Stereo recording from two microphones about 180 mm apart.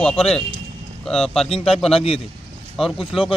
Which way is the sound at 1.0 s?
Centre (ahead or behind).